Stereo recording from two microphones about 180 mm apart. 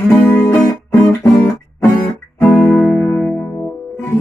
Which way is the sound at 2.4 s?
10° left (ahead or behind).